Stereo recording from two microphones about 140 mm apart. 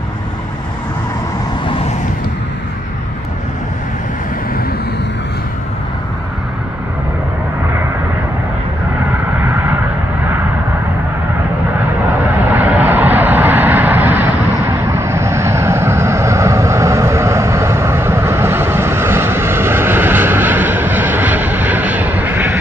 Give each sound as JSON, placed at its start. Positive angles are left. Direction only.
{"t": 12.5, "sound": "vehicle", "side_deg": -15}